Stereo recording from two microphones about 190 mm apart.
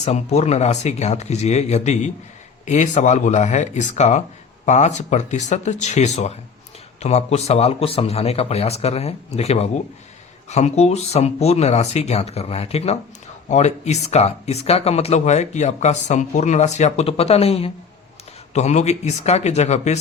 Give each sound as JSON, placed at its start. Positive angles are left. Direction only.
{"t": 0.0, "sound": "speech", "side_deg": 35}